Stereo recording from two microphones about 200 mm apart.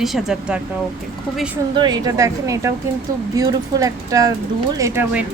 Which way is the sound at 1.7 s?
20° right (ahead or behind).